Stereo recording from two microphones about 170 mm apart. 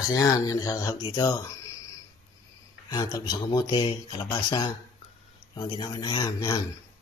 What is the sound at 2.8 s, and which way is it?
Speech, 25° left (ahead or behind).